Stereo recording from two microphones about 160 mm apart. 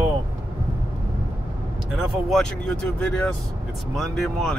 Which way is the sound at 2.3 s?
5° left (ahead or behind).